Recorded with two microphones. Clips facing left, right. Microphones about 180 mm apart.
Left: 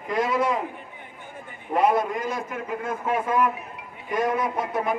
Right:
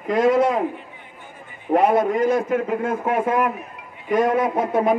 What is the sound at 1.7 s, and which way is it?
A man's voice, 55° right (ahead or behind).